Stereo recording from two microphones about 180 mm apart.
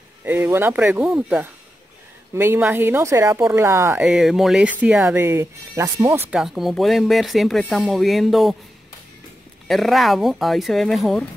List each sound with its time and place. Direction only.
0.2 s a woman's voice: 10° right (ahead or behind)
6.3 s speech: centre (ahead or behind)
9.7 s speech: centre (ahead or behind)